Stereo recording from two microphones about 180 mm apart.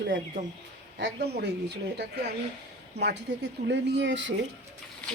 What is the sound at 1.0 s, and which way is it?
Speech, 70° right (ahead or behind).